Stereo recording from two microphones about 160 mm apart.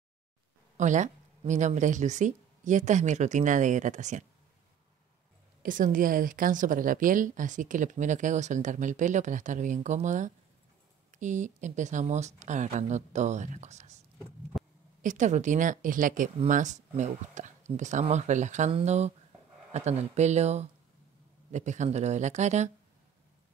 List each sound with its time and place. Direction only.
0.7 s a woman's voice: 50° right (ahead or behind)
5.6 s a woman's voice: 55° right (ahead or behind)
14.5 s a sound: centre (ahead or behind)
15.0 s a woman's voice: 50° right (ahead or behind)